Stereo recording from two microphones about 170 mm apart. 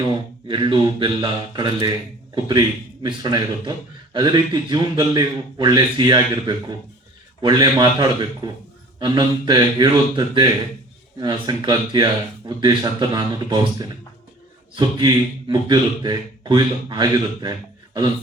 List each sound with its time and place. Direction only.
0.4 s speech: 30° right (ahead or behind)